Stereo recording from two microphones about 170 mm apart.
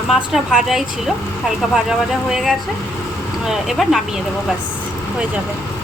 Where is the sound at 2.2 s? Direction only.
5° right (ahead or behind).